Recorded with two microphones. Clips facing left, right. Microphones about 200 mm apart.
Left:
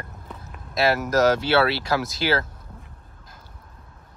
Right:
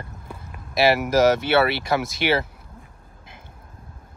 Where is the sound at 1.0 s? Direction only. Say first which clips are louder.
Right 2 dB; 60° right (ahead or behind).